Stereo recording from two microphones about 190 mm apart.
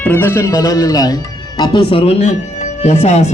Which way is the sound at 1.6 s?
25° left (ahead or behind).